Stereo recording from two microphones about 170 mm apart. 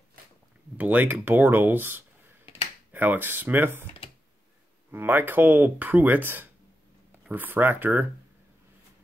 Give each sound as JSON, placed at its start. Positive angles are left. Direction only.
{"t": 0.7, "sound": "speech", "side_deg": -10}
{"t": 2.4, "sound": "a sound", "side_deg": 35}
{"t": 2.9, "sound": "speech", "side_deg": -10}
{"t": 4.9, "sound": "speech", "side_deg": -10}